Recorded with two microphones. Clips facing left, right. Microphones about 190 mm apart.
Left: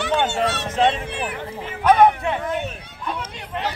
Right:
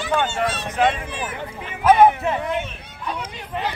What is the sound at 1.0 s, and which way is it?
Speech, 65° left (ahead or behind).